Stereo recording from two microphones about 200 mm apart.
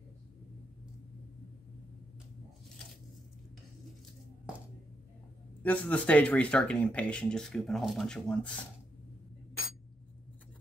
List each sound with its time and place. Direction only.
5.6 s speech: 5° left (ahead or behind)